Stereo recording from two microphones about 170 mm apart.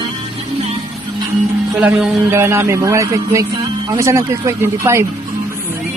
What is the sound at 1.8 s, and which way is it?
A man's voice, 10° right (ahead or behind).